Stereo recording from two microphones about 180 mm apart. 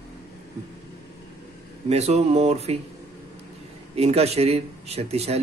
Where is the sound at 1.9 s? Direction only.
35° right (ahead or behind).